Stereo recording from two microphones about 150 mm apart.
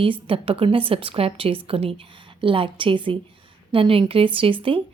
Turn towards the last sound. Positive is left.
turn(degrees=-35)  # may be behind; listen again after turning